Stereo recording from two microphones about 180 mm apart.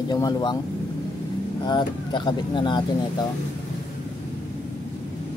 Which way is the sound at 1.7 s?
25° left (ahead or behind).